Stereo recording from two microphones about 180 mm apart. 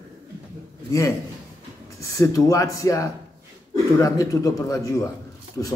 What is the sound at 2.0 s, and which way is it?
A man's voice, 20° left (ahead or behind).